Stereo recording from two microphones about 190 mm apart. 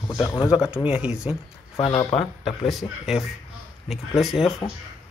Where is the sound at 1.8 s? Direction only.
30° left (ahead or behind).